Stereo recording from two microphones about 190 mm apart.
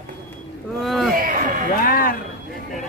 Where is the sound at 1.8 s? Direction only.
50° left (ahead or behind).